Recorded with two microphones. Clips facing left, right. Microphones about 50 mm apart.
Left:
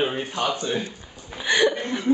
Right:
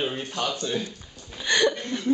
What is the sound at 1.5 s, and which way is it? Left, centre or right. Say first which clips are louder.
Chuckle: left 2 dB; centre.